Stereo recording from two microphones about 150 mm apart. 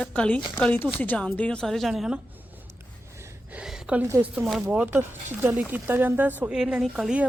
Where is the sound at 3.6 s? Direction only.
5° right (ahead or behind).